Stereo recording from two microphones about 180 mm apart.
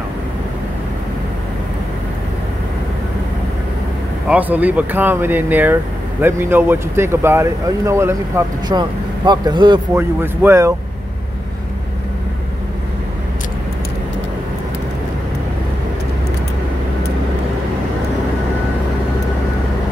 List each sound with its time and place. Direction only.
4.3 s speech: 10° right (ahead or behind); by 9.8 s 25° right (ahead or behind)
9.9 s speech: 10° right (ahead or behind)